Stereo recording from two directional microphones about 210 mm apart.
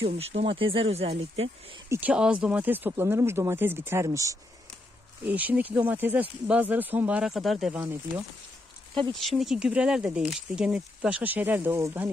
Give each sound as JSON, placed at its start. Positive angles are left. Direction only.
{"t": 0.0, "sound": "speech", "side_deg": -30}
{"t": 1.9, "sound": "speech", "side_deg": -5}
{"t": 9.1, "sound": "speech", "side_deg": 0}